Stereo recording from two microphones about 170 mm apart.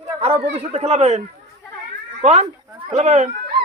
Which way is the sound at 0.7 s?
40° right (ahead or behind).